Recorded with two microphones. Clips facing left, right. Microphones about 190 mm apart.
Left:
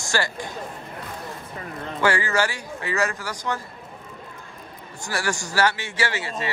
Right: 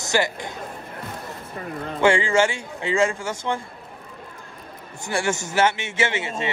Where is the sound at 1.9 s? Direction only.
25° right (ahead or behind).